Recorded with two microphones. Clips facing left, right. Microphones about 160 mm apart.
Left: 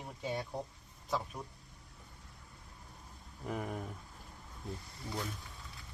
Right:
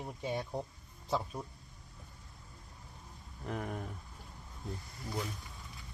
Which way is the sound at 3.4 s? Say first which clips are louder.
Even; centre (ahead or behind).